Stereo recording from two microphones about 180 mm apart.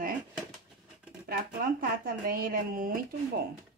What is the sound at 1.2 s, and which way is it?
Speech, 55° right (ahead or behind).